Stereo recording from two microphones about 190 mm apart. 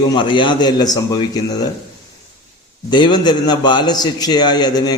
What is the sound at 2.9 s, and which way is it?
A man's voice, 25° left (ahead or behind).